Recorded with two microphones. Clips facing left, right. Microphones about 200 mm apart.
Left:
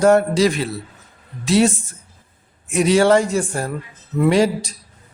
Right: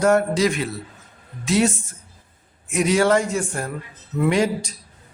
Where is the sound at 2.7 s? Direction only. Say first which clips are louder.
Left 4 dB; 30° left (ahead or behind).